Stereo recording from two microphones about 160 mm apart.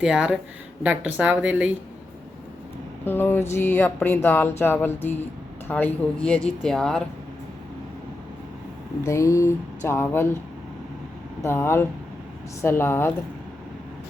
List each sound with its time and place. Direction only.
0.0 s speech: 5° right (ahead or behind)
3.0 s speech: 15° left (ahead or behind)
9.0 s speech: 20° left (ahead or behind)
11.4 s speech: 15° left (ahead or behind)